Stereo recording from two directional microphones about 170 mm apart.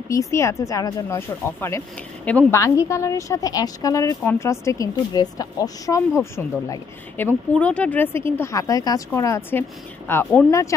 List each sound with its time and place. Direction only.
0.1 s a woman's voice: 20° left (ahead or behind)